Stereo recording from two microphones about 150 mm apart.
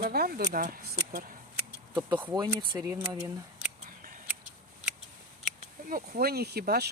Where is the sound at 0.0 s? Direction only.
85° right.